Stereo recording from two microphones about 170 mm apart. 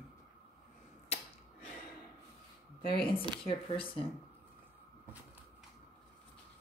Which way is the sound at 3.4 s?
30° left (ahead or behind).